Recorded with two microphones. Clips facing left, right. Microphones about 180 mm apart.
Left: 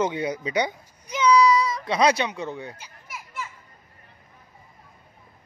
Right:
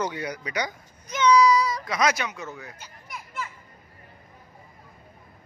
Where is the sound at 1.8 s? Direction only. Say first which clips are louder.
Left 4 dB; 30° left (ahead or behind).